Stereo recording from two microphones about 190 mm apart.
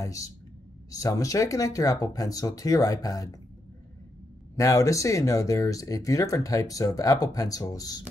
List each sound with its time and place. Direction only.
0.0 s speech: 15° left (ahead or behind)
4.6 s speech: 15° left (ahead or behind)